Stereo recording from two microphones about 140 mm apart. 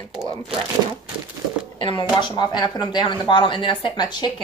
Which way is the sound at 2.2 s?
30° left (ahead or behind).